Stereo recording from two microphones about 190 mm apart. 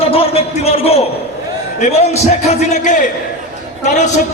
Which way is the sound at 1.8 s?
35° left (ahead or behind).